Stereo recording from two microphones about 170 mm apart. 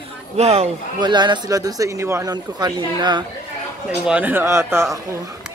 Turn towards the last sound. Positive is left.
turn(degrees=-15)  # may be behind; listen again after turning